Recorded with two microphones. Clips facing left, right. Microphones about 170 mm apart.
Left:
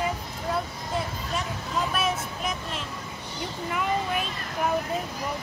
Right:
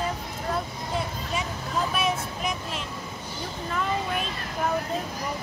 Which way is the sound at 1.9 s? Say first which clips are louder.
Right 1 dB; centre (ahead or behind).